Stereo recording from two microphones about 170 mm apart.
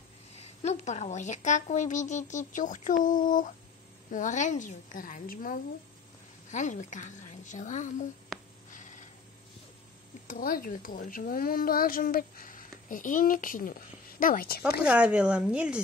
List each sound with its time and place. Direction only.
0.4 s speech: 40° left (ahead or behind); by 5.6 s 55° left (ahead or behind)
6.5 s speech: 45° left (ahead or behind)
8.3 s a sound: centre (ahead or behind)
10.2 s a woman's voice: 55° left (ahead or behind)
14.8 s speech: 5° right (ahead or behind)